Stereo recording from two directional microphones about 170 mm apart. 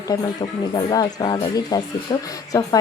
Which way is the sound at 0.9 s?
25° left (ahead or behind).